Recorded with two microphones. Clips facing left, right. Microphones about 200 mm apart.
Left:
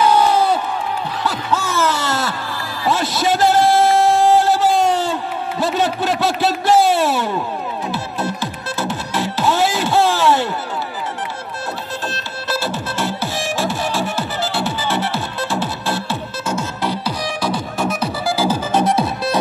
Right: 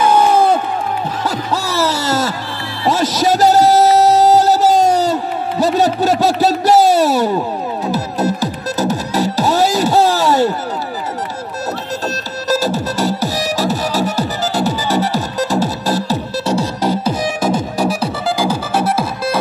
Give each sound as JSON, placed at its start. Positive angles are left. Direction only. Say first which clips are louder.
{"t": 0.0, "sound": "crowd", "louder": "right 3 dB", "side_deg": -50}
{"t": 1.2, "sound": "music", "louder": "left 1 dB", "side_deg": -35}
{"t": 12.4, "sound": "music", "louder": "right 7 dB", "side_deg": -40}
{"t": 18.4, "sound": "music", "louder": "left 1 dB", "side_deg": -10}